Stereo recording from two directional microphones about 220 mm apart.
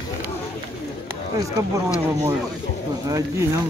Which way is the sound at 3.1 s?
15° right (ahead or behind).